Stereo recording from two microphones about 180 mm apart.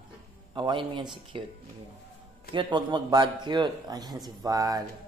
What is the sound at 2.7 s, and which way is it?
A man's voice, 25° right (ahead or behind).